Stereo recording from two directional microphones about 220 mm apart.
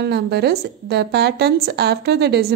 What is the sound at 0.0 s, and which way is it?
Speech, 50° right (ahead or behind).